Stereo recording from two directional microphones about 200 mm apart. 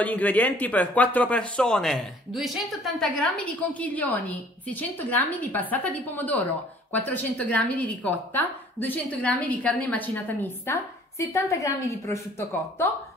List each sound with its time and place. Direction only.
0.0 s a woman's voice: 10° left (ahead or behind)